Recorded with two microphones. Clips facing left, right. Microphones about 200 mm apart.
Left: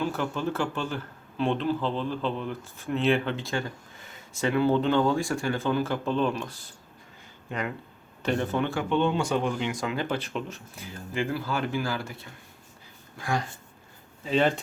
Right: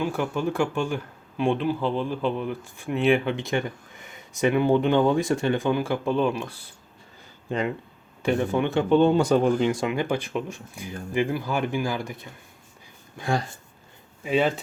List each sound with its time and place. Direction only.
0.0 s speech: 10° right (ahead or behind)
7.5 s speech: 30° right (ahead or behind)
8.2 s speech: 10° right (ahead or behind)
8.8 s speech: 40° right (ahead or behind)
9.8 s speech: 15° right (ahead or behind)
13.1 s speech: 30° right (ahead or behind)
14.3 s speech: 5° right (ahead or behind)